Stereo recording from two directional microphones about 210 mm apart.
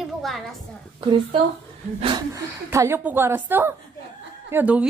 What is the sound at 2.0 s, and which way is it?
A woman's voice, 20° right (ahead or behind).